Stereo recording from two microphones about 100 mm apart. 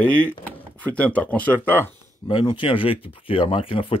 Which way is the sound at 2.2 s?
55° left (ahead or behind).